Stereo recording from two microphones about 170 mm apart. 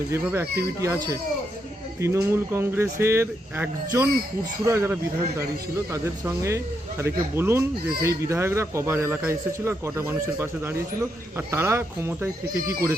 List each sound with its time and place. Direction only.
0.1 s speech: 15° right (ahead or behind)